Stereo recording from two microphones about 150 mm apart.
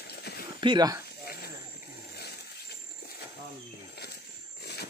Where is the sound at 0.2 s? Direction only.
90° left.